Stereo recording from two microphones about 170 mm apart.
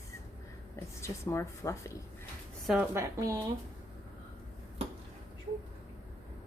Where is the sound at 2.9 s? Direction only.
20° right (ahead or behind).